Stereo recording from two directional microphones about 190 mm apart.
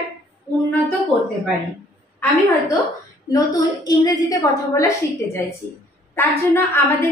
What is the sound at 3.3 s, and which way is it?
A woman's voice, 20° left (ahead or behind).